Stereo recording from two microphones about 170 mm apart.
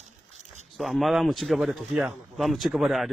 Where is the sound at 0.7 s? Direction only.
Centre (ahead or behind).